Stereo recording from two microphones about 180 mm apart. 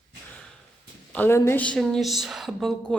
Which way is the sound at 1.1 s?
10° left (ahead or behind).